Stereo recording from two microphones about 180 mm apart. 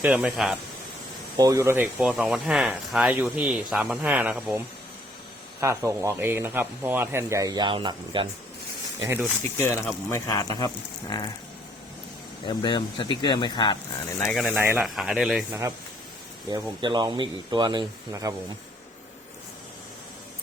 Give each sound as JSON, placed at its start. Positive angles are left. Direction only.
{"t": 0.0, "sound": "speech", "side_deg": -10}
{"t": 1.4, "sound": "speech", "side_deg": -15}
{"t": 9.0, "sound": "speech", "side_deg": -15}
{"t": 10.1, "sound": "speech", "side_deg": 20}
{"t": 12.5, "sound": "speech", "side_deg": 25}
{"t": 14.3, "sound": "speech", "side_deg": 0}
{"t": 14.5, "sound": "speech", "side_deg": -10}
{"t": 14.8, "sound": "speech", "side_deg": 0}
{"t": 16.5, "sound": "speech", "side_deg": -20}